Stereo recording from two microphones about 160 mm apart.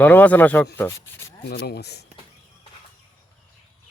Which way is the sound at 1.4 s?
85° left.